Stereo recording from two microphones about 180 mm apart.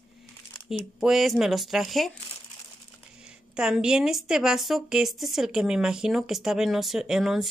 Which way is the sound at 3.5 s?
5° right (ahead or behind).